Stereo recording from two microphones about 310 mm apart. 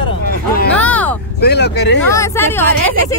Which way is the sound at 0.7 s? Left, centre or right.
Centre.